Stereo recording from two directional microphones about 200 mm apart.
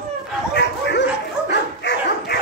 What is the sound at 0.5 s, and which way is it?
Bow-wow, 60° left (ahead or behind).